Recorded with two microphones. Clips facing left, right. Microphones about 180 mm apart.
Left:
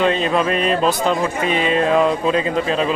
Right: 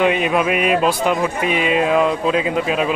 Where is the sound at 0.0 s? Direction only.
15° right (ahead or behind).